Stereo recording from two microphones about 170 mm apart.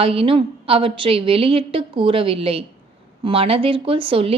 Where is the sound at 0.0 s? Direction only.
35° right (ahead or behind).